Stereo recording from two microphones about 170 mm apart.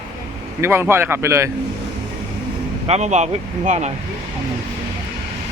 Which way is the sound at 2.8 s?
40° right (ahead or behind).